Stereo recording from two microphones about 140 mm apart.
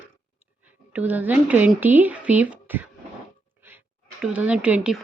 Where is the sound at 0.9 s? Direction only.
10° right (ahead or behind).